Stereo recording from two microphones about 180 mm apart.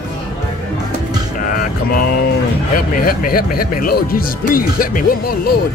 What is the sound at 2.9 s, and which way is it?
Speech, 50° left (ahead or behind).